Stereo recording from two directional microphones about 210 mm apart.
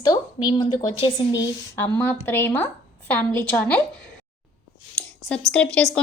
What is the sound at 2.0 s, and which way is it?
A woman's voice, 10° left (ahead or behind).